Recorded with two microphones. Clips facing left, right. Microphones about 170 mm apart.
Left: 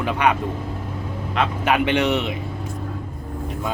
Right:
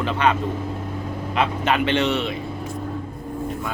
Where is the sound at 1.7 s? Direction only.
15° left (ahead or behind).